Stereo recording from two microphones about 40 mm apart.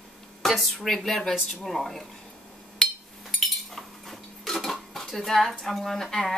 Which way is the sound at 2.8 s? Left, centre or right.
Centre.